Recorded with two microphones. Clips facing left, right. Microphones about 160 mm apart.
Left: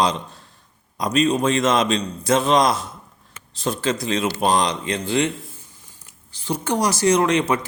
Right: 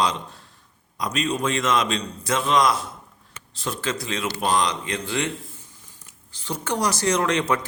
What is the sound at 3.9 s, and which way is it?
Speech, 20° left (ahead or behind).